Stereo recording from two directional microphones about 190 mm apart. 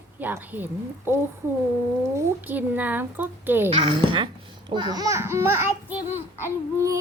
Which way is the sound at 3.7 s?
25° right (ahead or behind).